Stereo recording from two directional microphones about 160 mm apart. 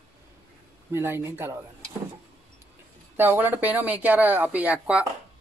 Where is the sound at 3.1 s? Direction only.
15° right (ahead or behind).